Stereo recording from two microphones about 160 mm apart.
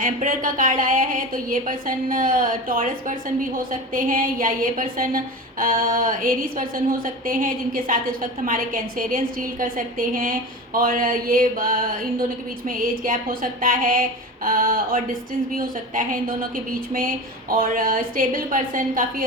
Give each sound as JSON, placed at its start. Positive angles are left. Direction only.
{"t": 0.0, "sound": "a woman's voice", "side_deg": -55}